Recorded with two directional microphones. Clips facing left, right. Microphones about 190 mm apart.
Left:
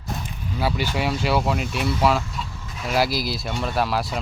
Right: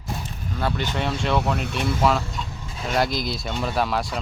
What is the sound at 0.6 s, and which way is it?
Speech, 10° left (ahead or behind).